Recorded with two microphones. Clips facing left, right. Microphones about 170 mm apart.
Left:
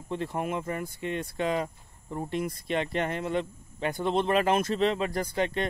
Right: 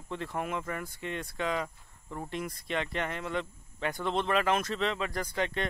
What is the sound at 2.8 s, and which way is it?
Speech, 35° left (ahead or behind).